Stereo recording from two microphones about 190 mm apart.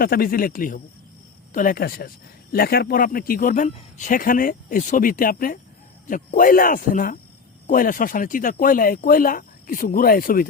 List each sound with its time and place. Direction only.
0.0 s speech: 50° left (ahead or behind)